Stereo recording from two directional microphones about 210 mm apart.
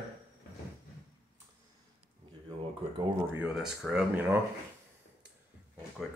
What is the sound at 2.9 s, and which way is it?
Speech, 10° right (ahead or behind).